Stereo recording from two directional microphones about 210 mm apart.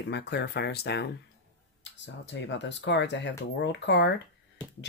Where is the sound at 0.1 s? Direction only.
55° left (ahead or behind).